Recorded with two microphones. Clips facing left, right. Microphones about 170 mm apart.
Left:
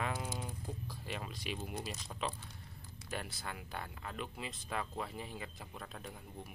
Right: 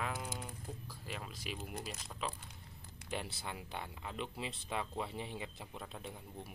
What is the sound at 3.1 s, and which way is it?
Speech, 20° right (ahead or behind).